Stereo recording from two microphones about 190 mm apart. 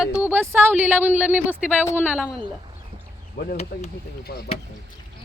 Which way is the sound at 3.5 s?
35° left (ahead or behind).